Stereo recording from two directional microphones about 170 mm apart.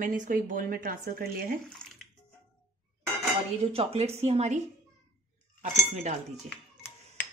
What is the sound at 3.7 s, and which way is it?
Speech, 35° right (ahead or behind).